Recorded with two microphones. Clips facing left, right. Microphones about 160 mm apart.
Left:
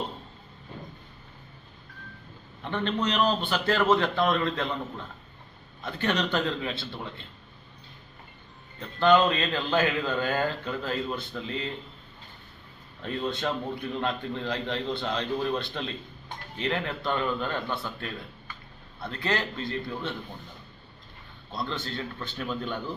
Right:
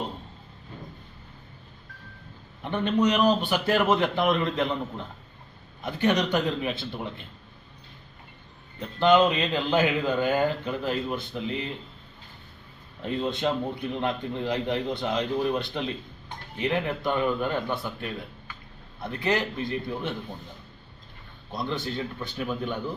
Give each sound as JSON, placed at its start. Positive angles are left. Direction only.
{"t": 2.6, "sound": "a man's voice", "side_deg": -15}
{"t": 9.0, "sound": "a man's voice", "side_deg": -15}
{"t": 13.0, "sound": "a man's voice", "side_deg": -20}
{"t": 21.5, "sound": "a man's voice", "side_deg": -15}